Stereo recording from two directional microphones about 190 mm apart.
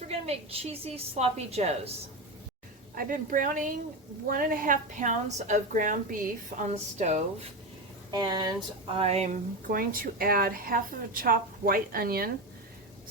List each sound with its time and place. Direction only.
0.1 s a woman's voice: 30° right (ahead or behind)
2.9 s a woman's voice: 50° right (ahead or behind)
8.1 s speech: 20° right (ahead or behind)
9.0 s a woman's voice: 35° right (ahead or behind); by 12.3 s 50° right (ahead or behind)